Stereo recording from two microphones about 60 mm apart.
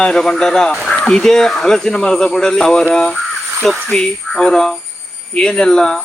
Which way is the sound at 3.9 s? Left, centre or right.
Centre.